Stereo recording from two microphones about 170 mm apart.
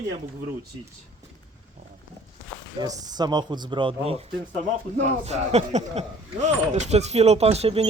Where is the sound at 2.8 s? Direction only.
25° right (ahead or behind).